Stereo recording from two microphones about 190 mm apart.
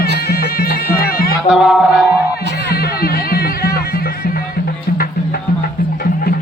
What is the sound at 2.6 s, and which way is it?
Music, 55° left (ahead or behind).